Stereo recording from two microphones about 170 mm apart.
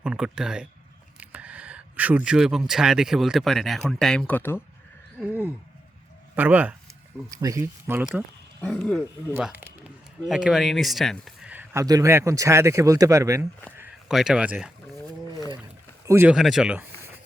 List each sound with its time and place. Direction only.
0.0 s speech: 5° right (ahead or behind); by 4.6 s 10° left (ahead or behind)
5.2 s speech: 10° right (ahead or behind)
8.6 s speech: 5° left (ahead or behind)
9.3 s speech: 10° right (ahead or behind)
11.5 s speech: 15° right (ahead or behind)
14.1 s speech: 5° right (ahead or behind)
16.0 s speech: 15° right (ahead or behind)
16.3 s speech: centre (ahead or behind)